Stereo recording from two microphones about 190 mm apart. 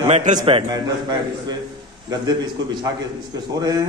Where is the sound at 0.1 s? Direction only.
40° right (ahead or behind).